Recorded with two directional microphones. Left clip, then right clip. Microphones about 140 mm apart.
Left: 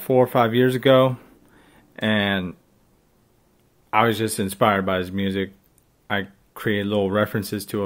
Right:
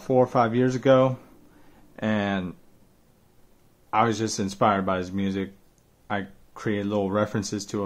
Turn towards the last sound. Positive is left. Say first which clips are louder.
# left 3 dB
turn(degrees=0)  # may be behind; listen again after turning